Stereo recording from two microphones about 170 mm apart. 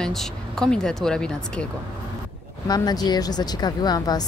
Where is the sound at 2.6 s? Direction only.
20° left (ahead or behind).